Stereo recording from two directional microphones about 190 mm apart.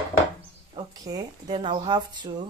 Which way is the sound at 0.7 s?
20° right (ahead or behind).